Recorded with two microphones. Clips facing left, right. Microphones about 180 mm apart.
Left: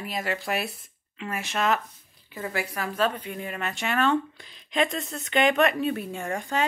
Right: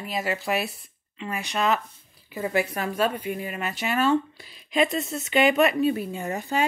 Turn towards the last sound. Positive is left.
turn(degrees=-5)  # may be behind; listen again after turning